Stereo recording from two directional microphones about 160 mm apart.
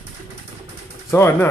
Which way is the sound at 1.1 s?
15° left (ahead or behind).